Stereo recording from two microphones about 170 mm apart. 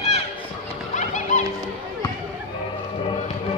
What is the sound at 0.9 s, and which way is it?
Music, 45° left (ahead or behind).